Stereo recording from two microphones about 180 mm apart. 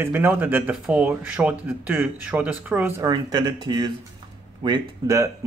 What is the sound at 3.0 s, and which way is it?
Speech, 25° right (ahead or behind).